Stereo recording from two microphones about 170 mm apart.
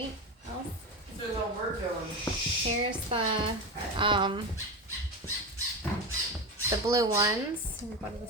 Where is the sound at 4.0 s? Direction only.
30° right (ahead or behind).